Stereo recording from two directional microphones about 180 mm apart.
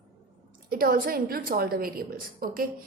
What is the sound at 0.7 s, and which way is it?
A woman's voice, 55° right (ahead or behind).